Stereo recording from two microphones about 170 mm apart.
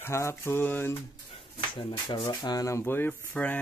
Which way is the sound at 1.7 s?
30° left (ahead or behind).